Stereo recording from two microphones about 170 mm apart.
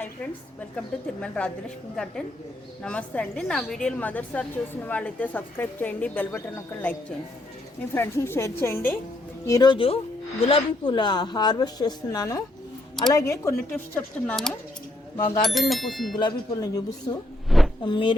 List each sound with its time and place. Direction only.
1.2 s a woman's voice: 5° left (ahead or behind)
9.5 s a woman's voice: 25° left (ahead or behind); by 16.1 s centre (ahead or behind)
16.1 s a woman's voice: 25° left (ahead or behind)
17.5 s a sound: centre (ahead or behind)
17.8 s a woman's voice: 30° left (ahead or behind)